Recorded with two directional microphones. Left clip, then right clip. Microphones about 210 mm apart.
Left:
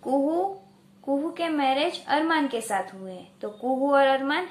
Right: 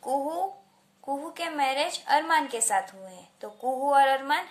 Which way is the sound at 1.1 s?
30° right (ahead or behind).